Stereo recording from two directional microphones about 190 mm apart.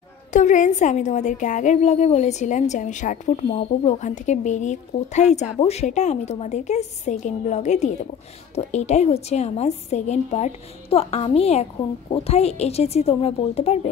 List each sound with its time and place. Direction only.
0.3 s a woman's voice: 40° left (ahead or behind)